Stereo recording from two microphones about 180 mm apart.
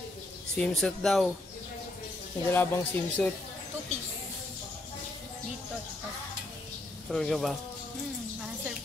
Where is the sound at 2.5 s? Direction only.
10° left (ahead or behind).